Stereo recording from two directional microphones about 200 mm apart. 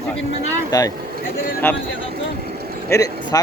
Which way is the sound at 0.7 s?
20° left (ahead or behind).